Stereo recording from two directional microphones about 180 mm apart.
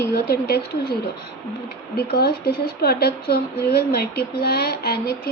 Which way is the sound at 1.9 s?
60° left (ahead or behind).